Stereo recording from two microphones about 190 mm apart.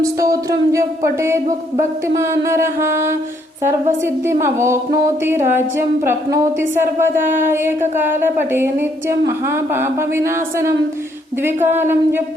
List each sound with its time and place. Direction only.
0.0 s a woman's voice: 15° right (ahead or behind)